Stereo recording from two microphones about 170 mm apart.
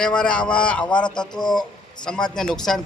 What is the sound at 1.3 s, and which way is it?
Speech, 25° left (ahead or behind).